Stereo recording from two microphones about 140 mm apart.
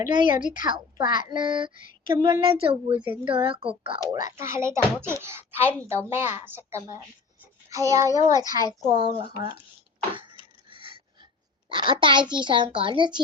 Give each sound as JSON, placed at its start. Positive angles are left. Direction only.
{"t": 0.0, "sound": "speech", "side_deg": -30}
{"t": 4.1, "sound": "a child's voice", "side_deg": -25}
{"t": 10.7, "sound": "a sound", "side_deg": -40}
{"t": 11.7, "sound": "speech", "side_deg": -35}